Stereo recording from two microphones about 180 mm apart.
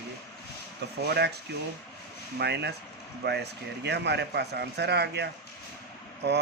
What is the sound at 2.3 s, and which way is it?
A man's voice, 70° right (ahead or behind).